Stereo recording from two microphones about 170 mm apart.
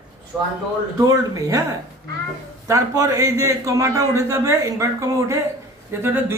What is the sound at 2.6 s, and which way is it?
A man's voice, 20° right (ahead or behind).